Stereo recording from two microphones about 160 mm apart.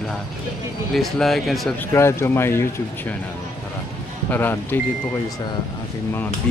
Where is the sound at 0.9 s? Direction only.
Centre (ahead or behind).